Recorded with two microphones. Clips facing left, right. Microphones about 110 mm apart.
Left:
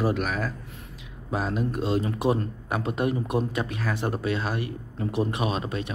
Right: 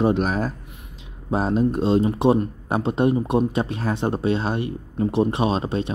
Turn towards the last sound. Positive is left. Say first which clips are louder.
# right 6 dB
turn(degrees=-30)  # may be behind; listen again after turning